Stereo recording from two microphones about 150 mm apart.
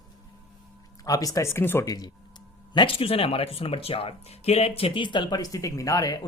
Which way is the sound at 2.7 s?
35° left (ahead or behind).